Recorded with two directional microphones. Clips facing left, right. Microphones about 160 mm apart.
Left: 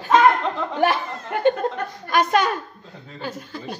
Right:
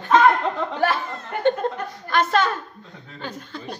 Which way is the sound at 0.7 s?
15° left (ahead or behind).